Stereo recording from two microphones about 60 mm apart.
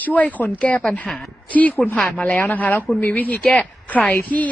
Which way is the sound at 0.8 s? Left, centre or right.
Centre.